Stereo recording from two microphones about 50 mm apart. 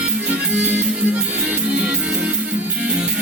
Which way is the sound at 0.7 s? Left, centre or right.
Right.